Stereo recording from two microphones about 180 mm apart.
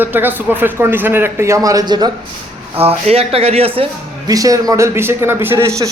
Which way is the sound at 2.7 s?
35° right (ahead or behind).